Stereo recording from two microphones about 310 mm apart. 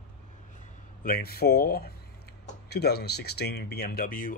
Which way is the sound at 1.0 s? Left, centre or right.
Left.